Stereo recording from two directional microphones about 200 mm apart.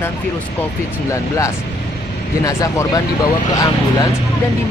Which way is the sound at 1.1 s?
15° left (ahead or behind).